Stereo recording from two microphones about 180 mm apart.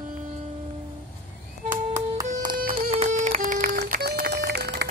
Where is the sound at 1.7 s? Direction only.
15° right (ahead or behind).